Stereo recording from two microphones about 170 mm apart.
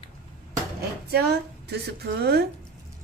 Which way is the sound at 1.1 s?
70° right (ahead or behind).